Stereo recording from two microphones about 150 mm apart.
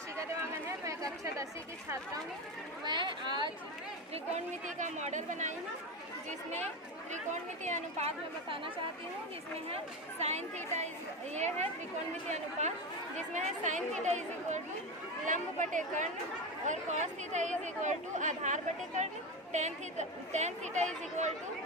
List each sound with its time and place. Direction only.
0.9 s speech: 20° right (ahead or behind)
2.8 s speech: 30° right (ahead or behind)
4.1 s speech: 50° right (ahead or behind)
7.1 s speech: 55° right (ahead or behind)
9.6 s speech: 45° right (ahead or behind)